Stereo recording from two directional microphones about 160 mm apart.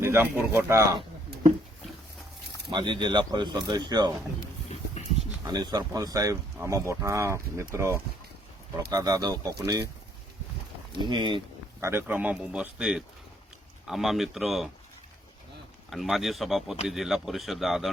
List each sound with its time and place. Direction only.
0.0 s a man's voice: 15° right (ahead or behind)
2.7 s speech: 30° right (ahead or behind)
4.7 s a sound: 40° left (ahead or behind)
5.5 s a man's voice: 25° right (ahead or behind)
11.0 s speech: 30° right (ahead or behind)
11.8 s a man's voice: 15° right (ahead or behind)
15.9 s speech: centre (ahead or behind)